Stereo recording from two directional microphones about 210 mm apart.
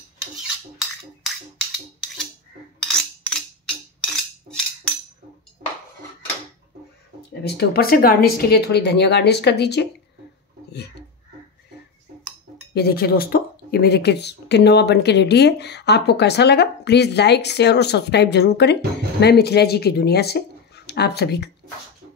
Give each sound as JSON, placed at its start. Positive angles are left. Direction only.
{"t": 2.8, "sound": "music", "side_deg": 5}
{"t": 7.4, "sound": "speech", "side_deg": 50}
{"t": 12.7, "sound": "speech", "side_deg": 45}